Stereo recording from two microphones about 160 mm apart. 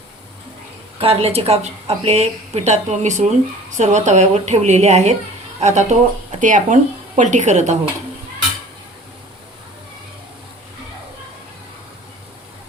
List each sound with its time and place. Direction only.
0.9 s a woman's voice: 35° right (ahead or behind)